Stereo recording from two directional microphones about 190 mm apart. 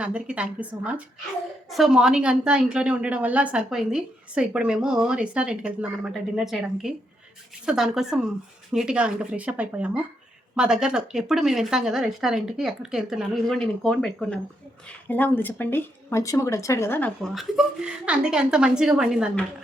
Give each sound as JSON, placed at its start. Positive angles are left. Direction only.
{"t": 0.0, "sound": "a woman's voice", "side_deg": -5}